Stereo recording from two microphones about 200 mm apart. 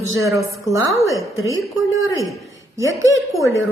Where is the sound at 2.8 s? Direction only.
15° right (ahead or behind).